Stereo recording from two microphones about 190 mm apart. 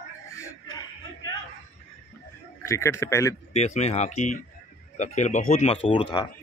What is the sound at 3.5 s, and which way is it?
Speech, 35° left (ahead or behind).